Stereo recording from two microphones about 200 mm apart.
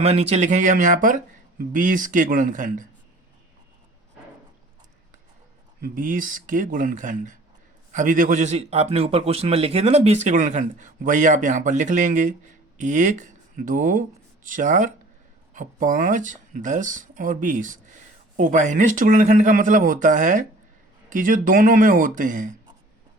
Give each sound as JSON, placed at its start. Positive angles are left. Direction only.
{"t": 0.0, "sound": "speech", "side_deg": -30}
{"t": 5.8, "sound": "speech", "side_deg": -45}